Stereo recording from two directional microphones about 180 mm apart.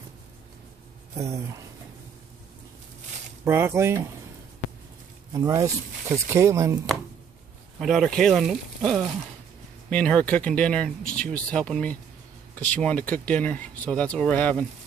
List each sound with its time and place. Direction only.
1.1 s speech: 15° right (ahead or behind)
3.4 s speech: 15° right (ahead or behind)
5.3 s speech: 20° right (ahead or behind)
7.8 s speech: centre (ahead or behind)